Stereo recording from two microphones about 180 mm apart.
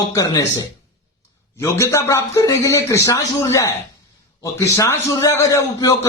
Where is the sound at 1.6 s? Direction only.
15° left (ahead or behind).